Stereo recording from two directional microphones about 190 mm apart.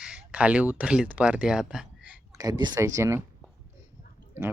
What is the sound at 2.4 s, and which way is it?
Speech, 20° right (ahead or behind).